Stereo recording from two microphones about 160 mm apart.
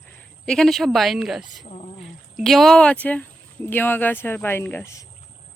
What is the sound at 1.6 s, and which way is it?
Speech, 40° left (ahead or behind).